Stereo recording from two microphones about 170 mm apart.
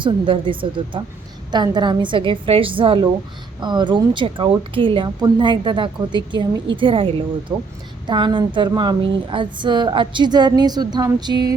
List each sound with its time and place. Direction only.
0.0 s speech: 30° right (ahead or behind)